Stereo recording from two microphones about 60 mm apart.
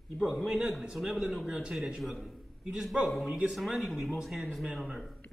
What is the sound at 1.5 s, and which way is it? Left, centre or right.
A man's voice, centre.